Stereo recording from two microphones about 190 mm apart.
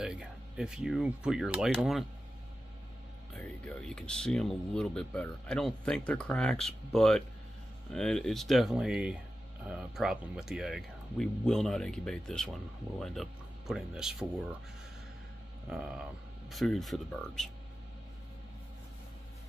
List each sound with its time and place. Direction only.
0.0 s speech: 5° right (ahead or behind)
3.3 s speech: 5° left (ahead or behind)
15.7 s speech: 5° right (ahead or behind)